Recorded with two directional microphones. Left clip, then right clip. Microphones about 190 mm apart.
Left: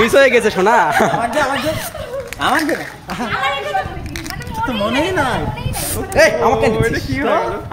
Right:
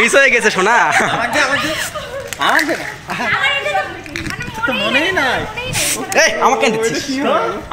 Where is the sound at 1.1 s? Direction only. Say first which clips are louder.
Right 2 dB; 60° left (ahead or behind).